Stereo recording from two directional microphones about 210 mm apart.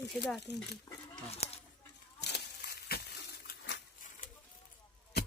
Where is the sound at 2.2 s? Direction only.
50° left (ahead or behind).